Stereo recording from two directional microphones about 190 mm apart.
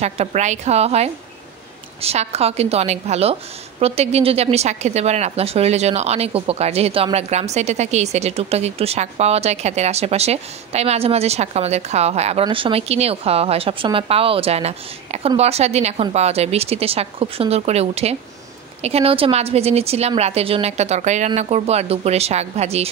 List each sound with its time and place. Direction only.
0.0 s speech: 35° right (ahead or behind)